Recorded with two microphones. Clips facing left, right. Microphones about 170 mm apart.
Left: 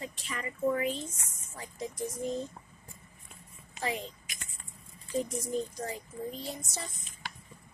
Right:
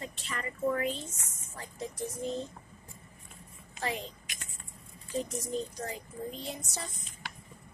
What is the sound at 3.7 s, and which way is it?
Vehicle, 10° left (ahead or behind).